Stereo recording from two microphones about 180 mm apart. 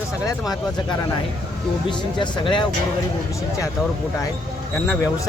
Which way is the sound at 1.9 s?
25° left (ahead or behind).